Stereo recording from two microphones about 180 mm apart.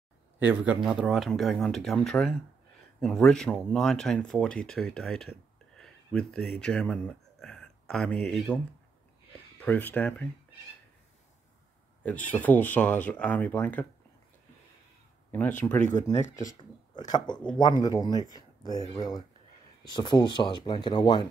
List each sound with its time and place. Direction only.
0.4 s speech: 10° right (ahead or behind)
9.6 s speech: 10° left (ahead or behind)
12.3 s speech: 10° left (ahead or behind)
15.9 s speech: 15° left (ahead or behind)
18.3 s a sound: 25° left (ahead or behind)
18.9 s speech: 25° left (ahead or behind)